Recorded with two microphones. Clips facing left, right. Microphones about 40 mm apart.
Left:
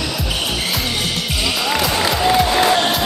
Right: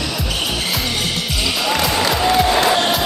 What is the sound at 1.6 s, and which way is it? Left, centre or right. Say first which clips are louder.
Music: right 1 dB; centre.